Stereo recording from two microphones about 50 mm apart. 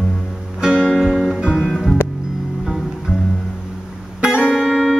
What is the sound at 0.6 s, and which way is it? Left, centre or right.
Music, centre.